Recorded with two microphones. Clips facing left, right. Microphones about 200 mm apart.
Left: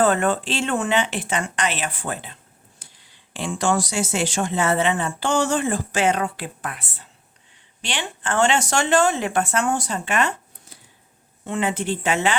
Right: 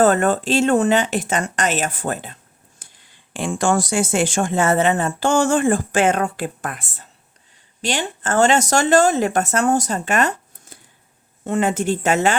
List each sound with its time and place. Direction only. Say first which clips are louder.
0.0 s speech: right 4 dB; 40° right (ahead or behind)